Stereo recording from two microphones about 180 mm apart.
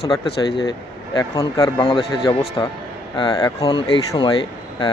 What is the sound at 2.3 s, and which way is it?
A man's voice, 30° left (ahead or behind).